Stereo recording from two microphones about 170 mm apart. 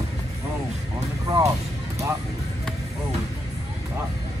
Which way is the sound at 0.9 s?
20° right (ahead or behind).